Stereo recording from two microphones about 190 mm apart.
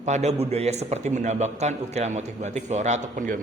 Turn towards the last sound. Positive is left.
turn(degrees=-45)  # may be behind; listen again after turning